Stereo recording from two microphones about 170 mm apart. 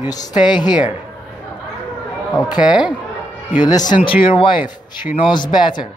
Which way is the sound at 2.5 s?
25° left (ahead or behind).